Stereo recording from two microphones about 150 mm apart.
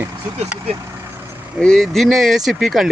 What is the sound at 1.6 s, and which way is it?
Speech, 5° left (ahead or behind).